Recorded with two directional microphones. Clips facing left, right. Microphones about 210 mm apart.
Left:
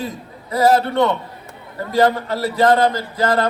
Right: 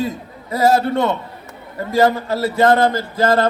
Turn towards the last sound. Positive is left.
turn(degrees=-45)  # may be behind; listen again after turning